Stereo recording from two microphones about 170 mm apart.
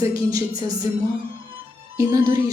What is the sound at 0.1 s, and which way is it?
Speech, 20° right (ahead or behind).